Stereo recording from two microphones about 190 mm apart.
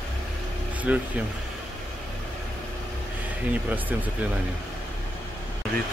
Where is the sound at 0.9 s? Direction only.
10° right (ahead or behind).